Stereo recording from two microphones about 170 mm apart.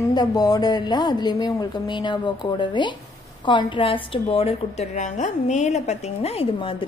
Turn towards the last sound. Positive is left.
turn(degrees=35)  # may be behind; listen again after turning